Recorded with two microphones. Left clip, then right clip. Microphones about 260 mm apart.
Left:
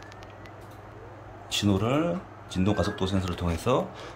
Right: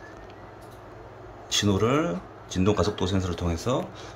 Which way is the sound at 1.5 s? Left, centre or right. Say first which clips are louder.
Right 3 dB; centre.